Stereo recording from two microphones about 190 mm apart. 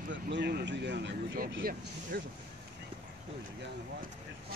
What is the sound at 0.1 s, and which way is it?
Speech, 65° right (ahead or behind).